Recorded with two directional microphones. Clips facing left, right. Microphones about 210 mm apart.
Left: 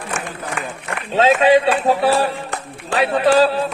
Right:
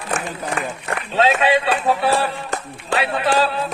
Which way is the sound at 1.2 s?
35° left (ahead or behind).